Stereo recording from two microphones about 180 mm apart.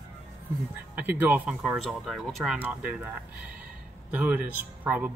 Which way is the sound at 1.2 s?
5° right (ahead or behind).